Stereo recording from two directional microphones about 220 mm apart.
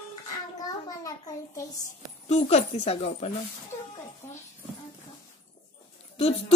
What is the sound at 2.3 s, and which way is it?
Speech, 30° left (ahead or behind).